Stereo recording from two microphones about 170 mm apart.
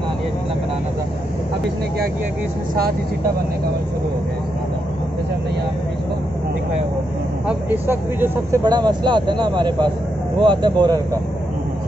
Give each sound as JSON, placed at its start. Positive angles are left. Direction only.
{"t": 7.4, "sound": "speech", "side_deg": -10}